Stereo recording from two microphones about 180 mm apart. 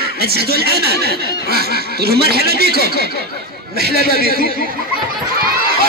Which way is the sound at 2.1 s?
60° right (ahead or behind).